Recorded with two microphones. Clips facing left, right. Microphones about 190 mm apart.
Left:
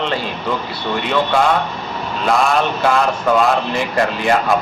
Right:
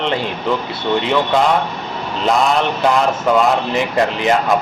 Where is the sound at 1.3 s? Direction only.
20° right (ahead or behind).